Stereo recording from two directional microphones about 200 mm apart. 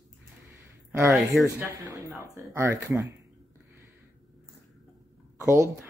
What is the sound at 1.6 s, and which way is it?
Speech, 15° right (ahead or behind).